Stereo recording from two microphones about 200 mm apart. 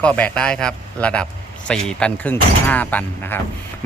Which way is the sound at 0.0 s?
5° left (ahead or behind).